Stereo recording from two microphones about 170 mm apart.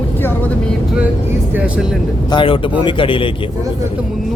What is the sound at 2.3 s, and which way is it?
A man's voice, 30° left (ahead or behind).